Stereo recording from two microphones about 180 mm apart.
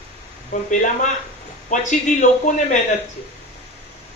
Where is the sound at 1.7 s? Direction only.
45° left (ahead or behind).